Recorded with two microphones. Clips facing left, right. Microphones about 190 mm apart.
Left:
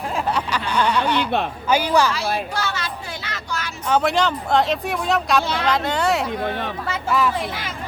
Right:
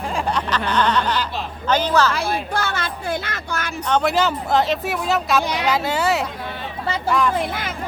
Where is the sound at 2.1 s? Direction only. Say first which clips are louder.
Right 1 dB; 55° right (ahead or behind).